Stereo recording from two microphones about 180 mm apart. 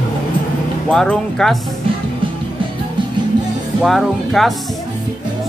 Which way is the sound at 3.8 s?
Centre (ahead or behind).